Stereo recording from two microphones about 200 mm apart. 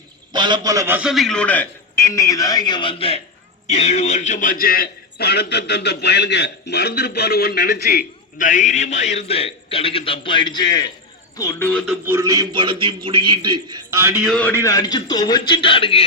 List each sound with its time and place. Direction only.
0.3 s a man's voice: 20° right (ahead or behind); by 11.8 s 10° left (ahead or behind)
12.0 s a man's voice: 15° right (ahead or behind)
14.3 s a man's voice: 5° left (ahead or behind)
14.6 s a man's voice: 15° left (ahead or behind)